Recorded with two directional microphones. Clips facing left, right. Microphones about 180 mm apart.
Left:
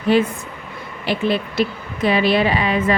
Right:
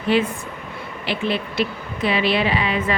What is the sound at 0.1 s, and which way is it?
A woman's voice, 40° left (ahead or behind).